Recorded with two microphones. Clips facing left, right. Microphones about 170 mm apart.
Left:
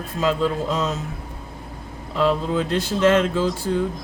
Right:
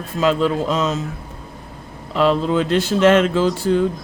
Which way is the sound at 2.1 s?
85° right.